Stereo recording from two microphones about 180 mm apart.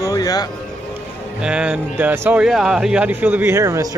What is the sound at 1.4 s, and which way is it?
Speech, 5° right (ahead or behind).